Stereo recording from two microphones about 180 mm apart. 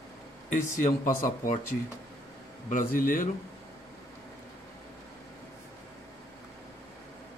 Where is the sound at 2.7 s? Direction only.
50° left (ahead or behind).